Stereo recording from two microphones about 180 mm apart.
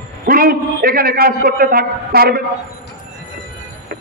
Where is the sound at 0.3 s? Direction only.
55° right (ahead or behind).